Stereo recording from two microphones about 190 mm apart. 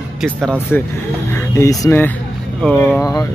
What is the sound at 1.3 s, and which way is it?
Speech, 15° left (ahead or behind).